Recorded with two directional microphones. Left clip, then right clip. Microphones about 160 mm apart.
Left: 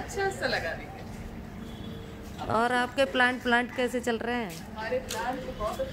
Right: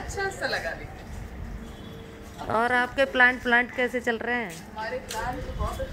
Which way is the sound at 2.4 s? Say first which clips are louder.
Right 3 dB; 10° right (ahead or behind).